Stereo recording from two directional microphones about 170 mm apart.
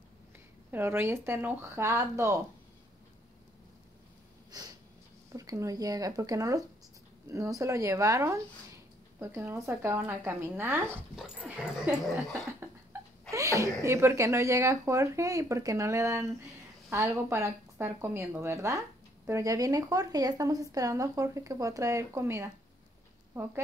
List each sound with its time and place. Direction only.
0.7 s speech: 10° right (ahead or behind)
4.5 s snort: 20° right (ahead or behind)
5.3 s speech: 20° right (ahead or behind)